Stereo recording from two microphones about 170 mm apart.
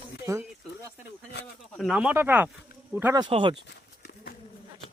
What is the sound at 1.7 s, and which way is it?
Speech, centre (ahead or behind).